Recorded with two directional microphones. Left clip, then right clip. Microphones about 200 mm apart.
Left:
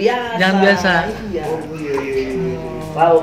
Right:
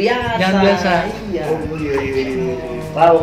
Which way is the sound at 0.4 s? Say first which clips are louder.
Left 3 dB; 45° left (ahead or behind).